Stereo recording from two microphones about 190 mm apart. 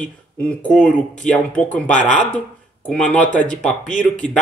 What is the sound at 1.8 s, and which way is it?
Speech, 40° left (ahead or behind).